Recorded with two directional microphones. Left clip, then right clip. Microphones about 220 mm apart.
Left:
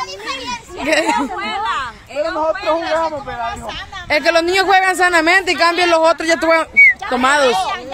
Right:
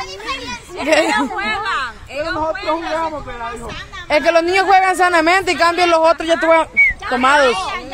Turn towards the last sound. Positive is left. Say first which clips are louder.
# even
turn(degrees=5)  # may be behind; listen again after turning